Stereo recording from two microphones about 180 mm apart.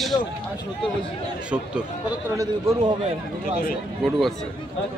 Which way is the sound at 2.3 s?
20° right (ahead or behind).